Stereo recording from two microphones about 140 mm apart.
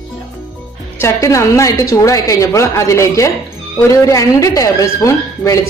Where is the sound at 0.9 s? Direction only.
20° left (ahead or behind).